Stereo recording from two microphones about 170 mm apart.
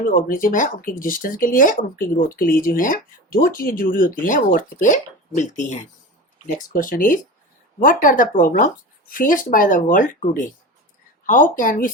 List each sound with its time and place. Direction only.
0.1 s speech: 50° left (ahead or behind)